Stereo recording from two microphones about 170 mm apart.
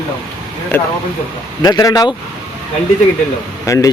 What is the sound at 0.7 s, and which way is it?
Speech, 10° left (ahead or behind).